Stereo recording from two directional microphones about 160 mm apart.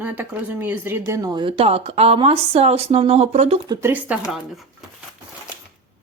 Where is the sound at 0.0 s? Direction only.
10° right (ahead or behind); by 3.6 s 40° right (ahead or behind).